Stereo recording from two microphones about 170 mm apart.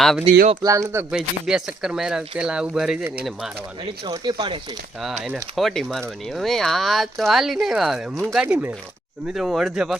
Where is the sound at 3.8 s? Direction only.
25° right (ahead or behind).